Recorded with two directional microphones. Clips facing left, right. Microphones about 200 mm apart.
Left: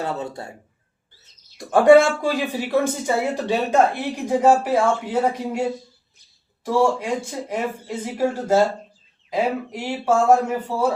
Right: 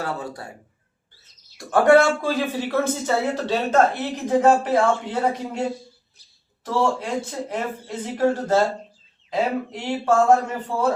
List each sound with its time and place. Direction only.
0.0 s speech: 25° left (ahead or behind)
1.5 s speech: 15° left (ahead or behind)
6.7 s speech: 10° left (ahead or behind)